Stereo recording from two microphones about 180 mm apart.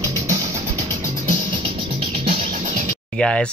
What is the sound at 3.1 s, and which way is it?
Speech, 5° left (ahead or behind).